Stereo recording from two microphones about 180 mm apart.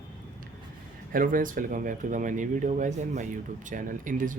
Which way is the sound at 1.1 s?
50° right (ahead or behind).